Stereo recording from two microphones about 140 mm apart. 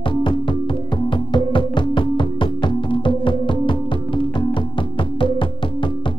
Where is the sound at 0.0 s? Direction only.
35° left (ahead or behind).